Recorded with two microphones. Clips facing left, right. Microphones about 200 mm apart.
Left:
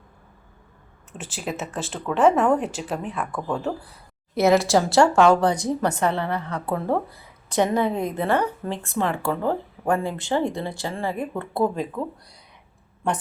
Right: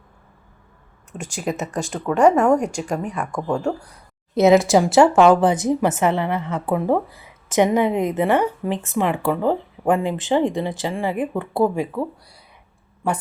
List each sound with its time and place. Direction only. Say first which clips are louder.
1.2 s speech: right 5 dB; centre (ahead or behind)
3.3 s a woman's voice: right 5 dB; 15° right (ahead or behind)
3.8 s speech: even; 5° left (ahead or behind)
4.4 s a woman's voice: right 4 dB; 20° right (ahead or behind)